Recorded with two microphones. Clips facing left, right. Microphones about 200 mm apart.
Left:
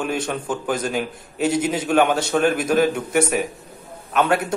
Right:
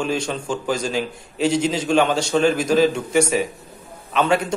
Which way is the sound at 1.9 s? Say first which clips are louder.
Even; 5° left (ahead or behind).